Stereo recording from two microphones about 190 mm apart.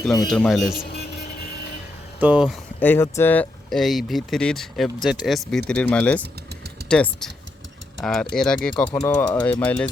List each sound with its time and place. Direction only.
0.0 s speech: centre (ahead or behind)
0.9 s vehicle: 60° left (ahead or behind)
2.2 s speech: 5° right (ahead or behind)
2.8 s speech: 10° left (ahead or behind)